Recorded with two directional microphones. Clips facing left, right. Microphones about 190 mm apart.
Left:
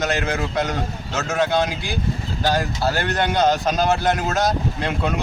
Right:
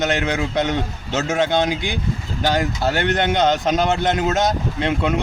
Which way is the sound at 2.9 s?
20° right (ahead or behind).